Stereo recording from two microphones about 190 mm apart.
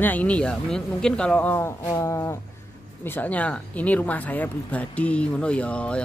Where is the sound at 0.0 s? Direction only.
10° left (ahead or behind).